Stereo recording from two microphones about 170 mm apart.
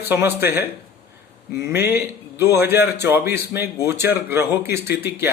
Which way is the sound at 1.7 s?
70° left (ahead or behind).